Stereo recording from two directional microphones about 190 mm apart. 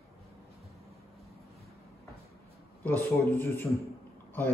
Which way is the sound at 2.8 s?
10° left (ahead or behind).